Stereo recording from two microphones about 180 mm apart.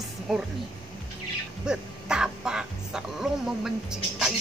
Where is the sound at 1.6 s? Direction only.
5° right (ahead or behind).